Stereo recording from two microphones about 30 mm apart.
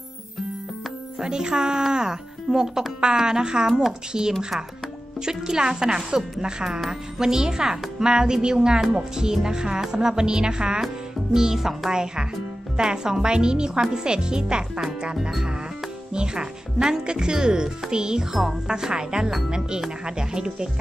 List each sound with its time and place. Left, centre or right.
1.2 s speech: right
5.2 s speech: right
11.3 s speech: centre
16.1 s speech: right
18.3 s speech: centre
18.7 s speech: right